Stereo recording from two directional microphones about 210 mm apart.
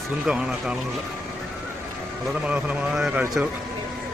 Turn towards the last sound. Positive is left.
turn(degrees=-5)  # may be behind; listen again after turning